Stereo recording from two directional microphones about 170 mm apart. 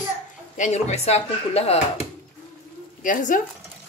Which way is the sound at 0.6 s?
40° left (ahead or behind).